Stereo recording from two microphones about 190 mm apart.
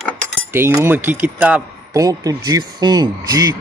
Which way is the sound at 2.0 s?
20° right (ahead or behind).